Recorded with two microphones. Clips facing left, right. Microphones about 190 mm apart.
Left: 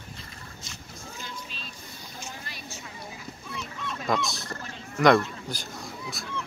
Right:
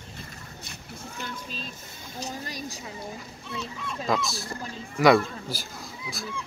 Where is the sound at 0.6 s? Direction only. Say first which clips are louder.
Right 5 dB; 60° right (ahead or behind).